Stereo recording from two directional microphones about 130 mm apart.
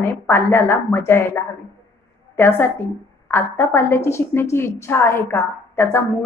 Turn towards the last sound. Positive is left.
turn(degrees=20)  # may be behind; listen again after turning